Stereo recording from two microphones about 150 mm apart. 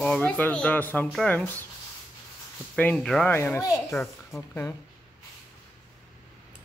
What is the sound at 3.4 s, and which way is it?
A child's voice, 20° left (ahead or behind).